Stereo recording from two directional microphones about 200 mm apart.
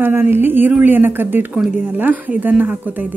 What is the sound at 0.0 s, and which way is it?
A woman's voice, 10° right (ahead or behind).